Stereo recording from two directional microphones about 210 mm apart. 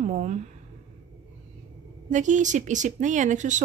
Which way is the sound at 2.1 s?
35° right (ahead or behind).